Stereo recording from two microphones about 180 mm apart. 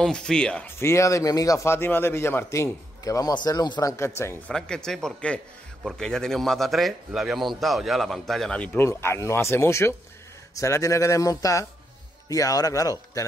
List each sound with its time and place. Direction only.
0.0 s speech: 5° left (ahead or behind)
4.6 s a man's voice: 5° left (ahead or behind); by 13.2 s 20° left (ahead or behind)